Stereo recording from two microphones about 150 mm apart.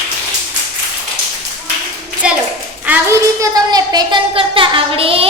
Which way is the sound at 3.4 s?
25° right (ahead or behind).